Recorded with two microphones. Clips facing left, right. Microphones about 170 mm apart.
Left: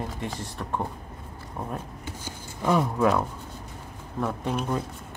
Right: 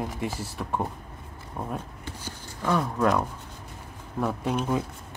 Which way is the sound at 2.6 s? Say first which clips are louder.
Left 2 dB; 10° left (ahead or behind).